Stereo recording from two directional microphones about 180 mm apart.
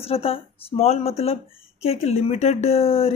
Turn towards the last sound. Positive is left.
turn(degrees=35)  # may be behind; listen again after turning